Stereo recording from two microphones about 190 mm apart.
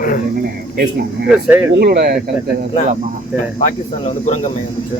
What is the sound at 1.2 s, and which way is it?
Speech, 10° right (ahead or behind).